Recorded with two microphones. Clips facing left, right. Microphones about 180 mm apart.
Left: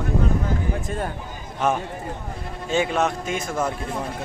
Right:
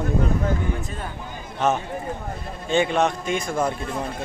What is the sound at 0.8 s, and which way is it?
Speech, 45° left (ahead or behind).